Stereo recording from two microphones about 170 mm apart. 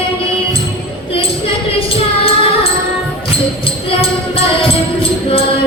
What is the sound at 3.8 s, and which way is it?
Music, 35° left (ahead or behind).